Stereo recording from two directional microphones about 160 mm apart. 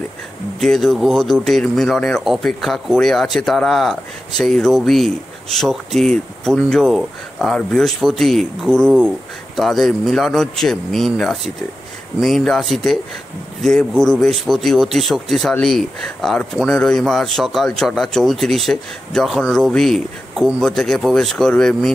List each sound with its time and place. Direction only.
0.6 s speech: 5° left (ahead or behind)